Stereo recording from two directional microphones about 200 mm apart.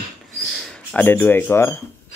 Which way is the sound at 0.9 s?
10° left (ahead or behind).